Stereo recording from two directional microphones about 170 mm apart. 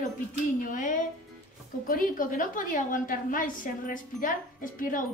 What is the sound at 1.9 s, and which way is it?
A woman's voice, 55° left (ahead or behind).